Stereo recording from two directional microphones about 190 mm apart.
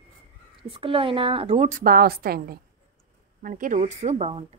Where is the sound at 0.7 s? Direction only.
30° right (ahead or behind).